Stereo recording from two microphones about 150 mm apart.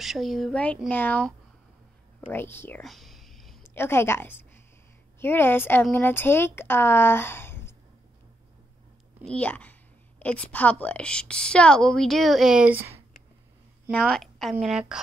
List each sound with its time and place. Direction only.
0.0 s a woman's voice: centre (ahead or behind); by 2.8 s 15° left (ahead or behind)
2.8 s whispering: centre (ahead or behind)
3.6 s a woman's voice: 15° left (ahead or behind)
9.2 s a woman's voice: 10° left (ahead or behind); by 13.0 s 15° right (ahead or behind)
14.0 s a woman's voice: centre (ahead or behind)